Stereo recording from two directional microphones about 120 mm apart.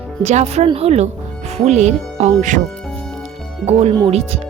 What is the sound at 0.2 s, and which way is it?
Speech, 65° right (ahead or behind).